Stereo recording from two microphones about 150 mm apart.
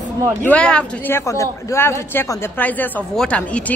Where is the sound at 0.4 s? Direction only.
10° left (ahead or behind).